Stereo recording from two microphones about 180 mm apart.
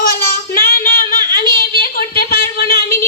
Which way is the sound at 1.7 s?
55° left (ahead or behind).